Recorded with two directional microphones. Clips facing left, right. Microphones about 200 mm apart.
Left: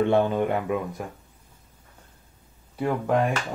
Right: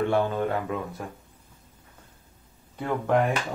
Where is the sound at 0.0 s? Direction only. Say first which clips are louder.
Left 3 dB; 20° left (ahead or behind).